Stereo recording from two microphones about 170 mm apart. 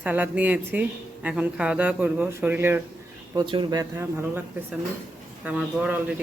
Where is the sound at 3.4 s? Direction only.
30° right (ahead or behind).